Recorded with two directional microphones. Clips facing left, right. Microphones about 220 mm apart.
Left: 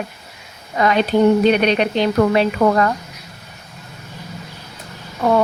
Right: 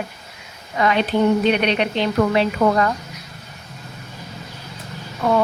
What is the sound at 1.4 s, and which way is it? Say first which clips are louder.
Speech: left 3 dB; 40° left (ahead or behind).